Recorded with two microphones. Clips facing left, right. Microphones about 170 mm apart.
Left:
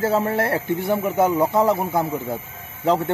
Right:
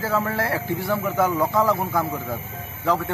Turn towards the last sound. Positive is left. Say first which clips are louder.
# left 3 dB
turn(degrees=25)  # may be behind; listen again after turning